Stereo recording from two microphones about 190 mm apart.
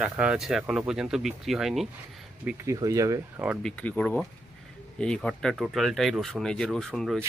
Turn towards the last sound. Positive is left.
turn(degrees=0)  # may be behind; listen again after turning